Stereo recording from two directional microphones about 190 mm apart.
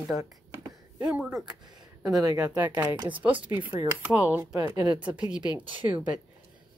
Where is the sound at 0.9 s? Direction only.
5° right (ahead or behind).